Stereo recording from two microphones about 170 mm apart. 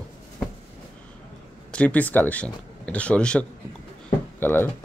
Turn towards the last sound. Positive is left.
turn(degrees=10)  # may be behind; listen again after turning